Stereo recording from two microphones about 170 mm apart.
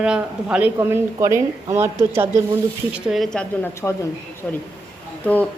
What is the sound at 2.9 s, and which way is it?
A woman's voice, centre (ahead or behind).